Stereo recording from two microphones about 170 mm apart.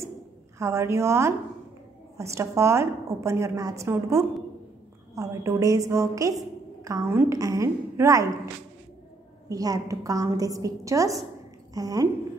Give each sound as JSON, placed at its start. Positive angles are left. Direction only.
{"t": 0.6, "sound": "a woman's voice", "side_deg": -15}
{"t": 9.5, "sound": "a woman's voice", "side_deg": -20}